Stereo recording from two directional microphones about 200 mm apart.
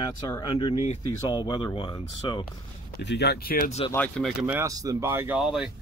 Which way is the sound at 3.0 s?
60° left (ahead or behind).